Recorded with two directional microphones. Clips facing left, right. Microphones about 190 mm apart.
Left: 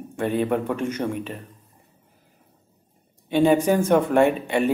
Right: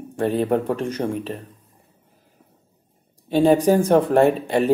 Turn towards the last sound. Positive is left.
turn(degrees=-35)  # may be behind; listen again after turning